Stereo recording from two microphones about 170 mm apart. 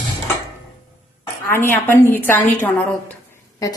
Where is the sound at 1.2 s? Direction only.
15° left (ahead or behind).